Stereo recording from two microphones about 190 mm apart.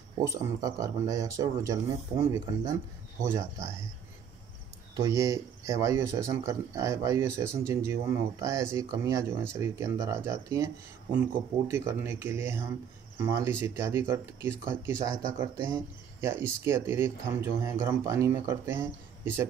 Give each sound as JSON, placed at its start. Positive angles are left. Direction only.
{"t": 0.2, "sound": "speech", "side_deg": -15}
{"t": 4.9, "sound": "speech", "side_deg": -15}